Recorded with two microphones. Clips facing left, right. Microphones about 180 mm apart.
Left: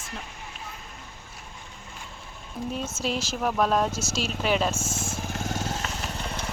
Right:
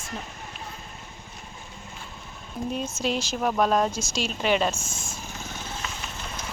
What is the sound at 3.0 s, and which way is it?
Speech, 5° left (ahead or behind).